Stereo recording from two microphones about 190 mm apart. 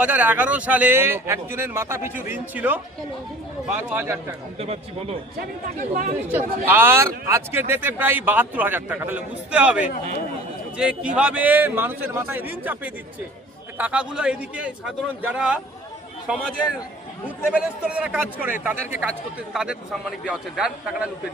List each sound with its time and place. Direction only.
0.0 s a man's voice: 10° right (ahead or behind)
4.6 s a man's voice: 35° right (ahead or behind)
5.8 s speech: 45° right (ahead or behind)
6.2 s a man's voice: 10° right (ahead or behind)